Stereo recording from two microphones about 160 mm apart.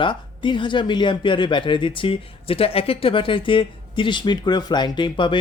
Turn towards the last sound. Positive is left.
turn(degrees=30)  # may be behind; listen again after turning